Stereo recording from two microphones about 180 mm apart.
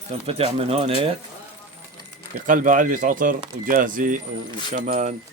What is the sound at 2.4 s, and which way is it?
Speech, 50° right (ahead or behind).